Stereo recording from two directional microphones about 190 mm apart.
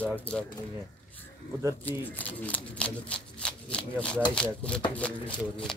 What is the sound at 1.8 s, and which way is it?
Speech, 10° left (ahead or behind).